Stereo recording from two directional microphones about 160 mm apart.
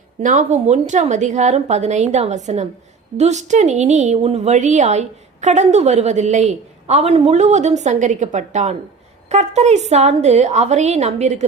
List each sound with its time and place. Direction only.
0.2 s a woman's voice: 50° right (ahead or behind)